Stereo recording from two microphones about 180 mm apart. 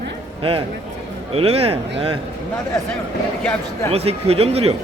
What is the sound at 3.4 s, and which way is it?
Speech, 5° left (ahead or behind).